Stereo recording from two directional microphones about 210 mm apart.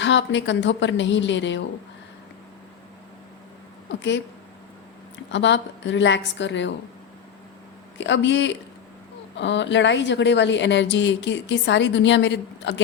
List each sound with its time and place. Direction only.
0.0 s a woman's voice: 60° left (ahead or behind)
3.8 s a woman's voice: 60° left (ahead or behind)
5.3 s a woman's voice: 60° left (ahead or behind)
7.9 s a woman's voice: 60° left (ahead or behind)